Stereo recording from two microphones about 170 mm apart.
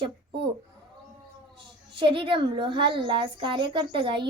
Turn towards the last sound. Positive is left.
turn(degrees=-30)  # may be behind; listen again after turning